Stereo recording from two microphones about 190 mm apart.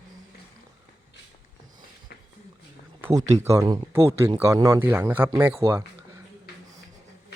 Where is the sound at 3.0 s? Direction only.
15° right (ahead or behind).